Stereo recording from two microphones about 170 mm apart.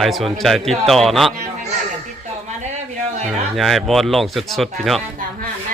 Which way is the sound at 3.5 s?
Centre (ahead or behind).